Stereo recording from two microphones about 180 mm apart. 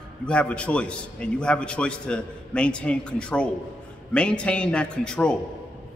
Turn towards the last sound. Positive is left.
turn(degrees=5)  # may be behind; listen again after turning